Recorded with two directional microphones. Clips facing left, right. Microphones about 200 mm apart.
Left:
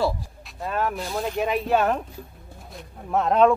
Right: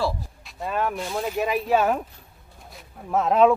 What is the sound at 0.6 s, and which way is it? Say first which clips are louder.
Speech: even; centre (ahead or behind).